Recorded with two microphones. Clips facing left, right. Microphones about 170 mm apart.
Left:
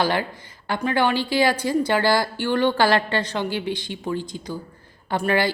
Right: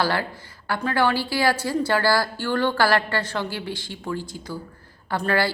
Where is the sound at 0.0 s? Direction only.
20° left (ahead or behind).